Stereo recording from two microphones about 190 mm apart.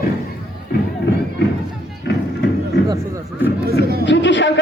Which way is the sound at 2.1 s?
70° left (ahead or behind).